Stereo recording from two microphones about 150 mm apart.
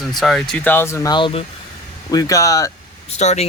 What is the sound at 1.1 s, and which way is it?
Speech, 35° left (ahead or behind).